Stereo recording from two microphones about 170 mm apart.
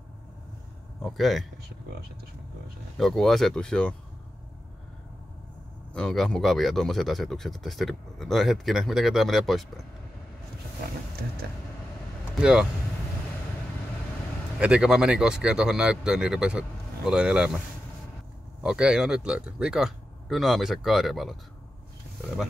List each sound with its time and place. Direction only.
1.0 s speech: centre (ahead or behind)
1.6 s speech: 65° right (ahead or behind)
3.0 s speech: centre (ahead or behind)
5.9 s speech: 5° left (ahead or behind)
12.4 s speech: 5° right (ahead or behind)
14.6 s speech: 5° right (ahead or behind)
18.6 s speech: 5° right (ahead or behind)